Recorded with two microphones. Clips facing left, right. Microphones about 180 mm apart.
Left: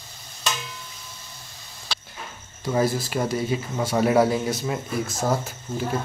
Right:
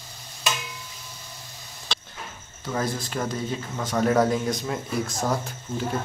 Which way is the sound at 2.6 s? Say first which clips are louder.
Left 5 dB; 10° left (ahead or behind).